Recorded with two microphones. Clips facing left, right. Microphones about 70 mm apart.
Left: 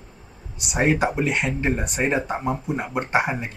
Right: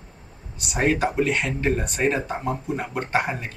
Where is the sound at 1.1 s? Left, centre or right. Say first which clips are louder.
Even; centre.